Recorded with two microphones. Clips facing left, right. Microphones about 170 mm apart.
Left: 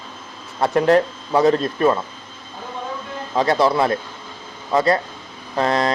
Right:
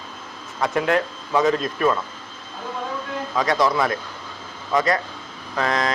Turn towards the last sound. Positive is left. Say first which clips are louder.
# left 4 dB
turn(degrees=30)  # may be behind; listen again after turning